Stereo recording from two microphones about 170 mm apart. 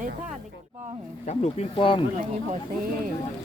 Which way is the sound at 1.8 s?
30° left (ahead or behind).